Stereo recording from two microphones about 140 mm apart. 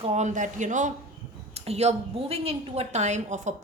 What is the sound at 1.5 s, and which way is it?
A woman's voice, 50° right (ahead or behind).